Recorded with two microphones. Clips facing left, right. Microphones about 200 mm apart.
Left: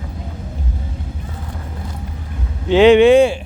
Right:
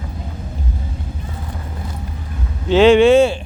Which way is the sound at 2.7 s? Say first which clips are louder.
Left 1 dB; 15° left (ahead or behind).